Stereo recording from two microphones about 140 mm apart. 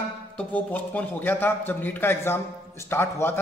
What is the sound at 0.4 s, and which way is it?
A man's voice, 10° left (ahead or behind).